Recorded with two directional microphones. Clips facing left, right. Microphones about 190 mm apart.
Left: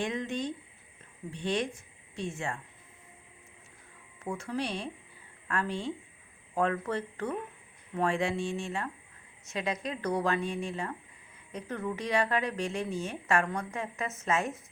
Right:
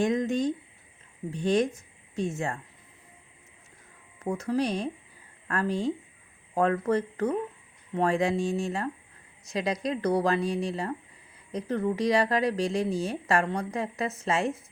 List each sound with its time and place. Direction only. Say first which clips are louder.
0.0 s speech: right 7 dB; 40° right (ahead or behind)
4.2 s speech: right 7 dB; 40° right (ahead or behind)